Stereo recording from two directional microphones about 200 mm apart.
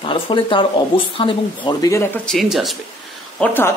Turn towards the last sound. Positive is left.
turn(degrees=10)  # may be behind; listen again after turning